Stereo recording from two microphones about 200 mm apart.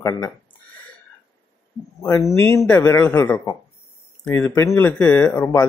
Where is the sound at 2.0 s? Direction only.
15° left (ahead or behind).